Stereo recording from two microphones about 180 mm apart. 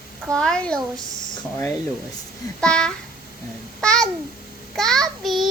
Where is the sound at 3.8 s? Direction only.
5° left (ahead or behind).